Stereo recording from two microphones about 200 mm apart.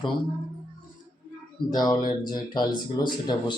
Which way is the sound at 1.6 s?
25° left (ahead or behind).